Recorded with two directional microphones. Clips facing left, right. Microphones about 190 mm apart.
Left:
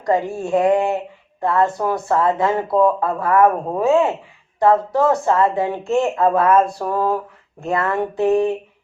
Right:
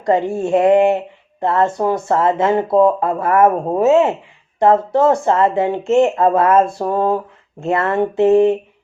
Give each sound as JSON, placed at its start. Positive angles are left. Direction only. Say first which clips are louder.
{"t": 0.1, "sound": "speech", "louder": "right 3 dB", "side_deg": -25}